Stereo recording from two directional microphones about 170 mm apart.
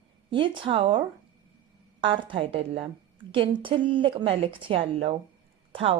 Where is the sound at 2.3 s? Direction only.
30° right (ahead or behind).